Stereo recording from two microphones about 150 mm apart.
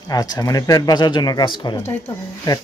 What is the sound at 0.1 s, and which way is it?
Speech, 25° left (ahead or behind).